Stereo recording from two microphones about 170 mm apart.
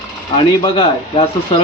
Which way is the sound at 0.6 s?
30° left (ahead or behind).